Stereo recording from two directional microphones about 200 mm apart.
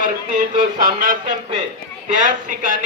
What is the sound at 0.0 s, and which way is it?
A man's voice, 40° right (ahead or behind).